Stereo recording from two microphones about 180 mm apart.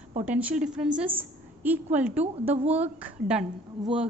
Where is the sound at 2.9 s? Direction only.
10° right (ahead or behind).